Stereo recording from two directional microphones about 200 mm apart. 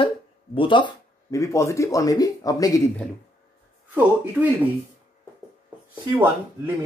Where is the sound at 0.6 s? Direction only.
25° left (ahead or behind).